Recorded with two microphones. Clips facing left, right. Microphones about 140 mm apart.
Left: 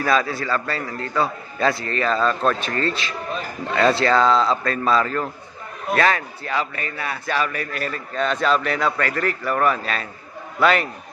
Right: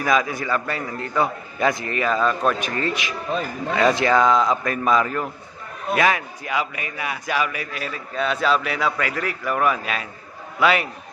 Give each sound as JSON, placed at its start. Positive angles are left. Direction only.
{"t": 0.0, "sound": "a man's voice", "side_deg": -15}